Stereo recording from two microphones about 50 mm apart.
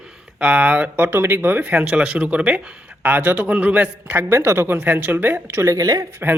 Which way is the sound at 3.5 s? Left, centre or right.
Right.